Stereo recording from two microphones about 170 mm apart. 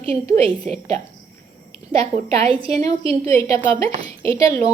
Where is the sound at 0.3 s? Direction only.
35° right (ahead or behind).